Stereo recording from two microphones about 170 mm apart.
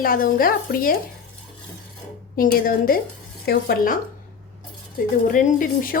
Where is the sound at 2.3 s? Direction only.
55° left (ahead or behind).